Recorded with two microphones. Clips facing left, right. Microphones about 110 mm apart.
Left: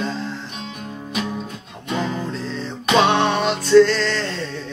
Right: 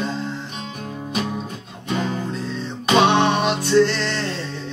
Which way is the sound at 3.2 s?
20° right (ahead or behind).